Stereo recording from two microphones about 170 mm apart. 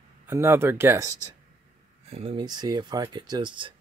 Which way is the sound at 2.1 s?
35° right (ahead or behind).